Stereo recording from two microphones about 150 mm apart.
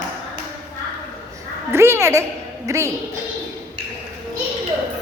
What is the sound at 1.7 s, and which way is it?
A woman's voice, 15° right (ahead or behind).